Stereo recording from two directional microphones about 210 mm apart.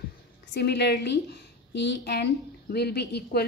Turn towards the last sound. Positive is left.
turn(degrees=50)  # may be behind; listen again after turning